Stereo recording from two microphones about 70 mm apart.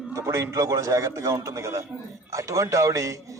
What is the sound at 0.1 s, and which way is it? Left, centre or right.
A man's voice, right.